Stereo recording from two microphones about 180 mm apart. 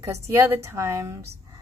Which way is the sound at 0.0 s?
15° right (ahead or behind).